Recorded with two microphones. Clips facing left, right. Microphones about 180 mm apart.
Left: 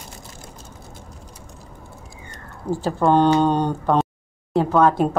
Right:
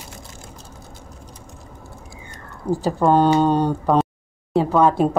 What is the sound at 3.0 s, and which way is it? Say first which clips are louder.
Speech: even; 5° right (ahead or behind).